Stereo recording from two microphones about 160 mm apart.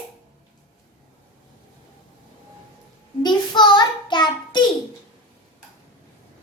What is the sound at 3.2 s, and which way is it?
Child singing, 30° left (ahead or behind).